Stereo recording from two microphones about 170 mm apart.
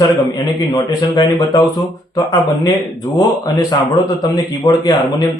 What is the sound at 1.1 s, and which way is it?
Speech, 25° left (ahead or behind).